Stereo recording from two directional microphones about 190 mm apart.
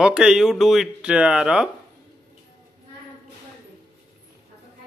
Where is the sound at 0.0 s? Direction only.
5° right (ahead or behind).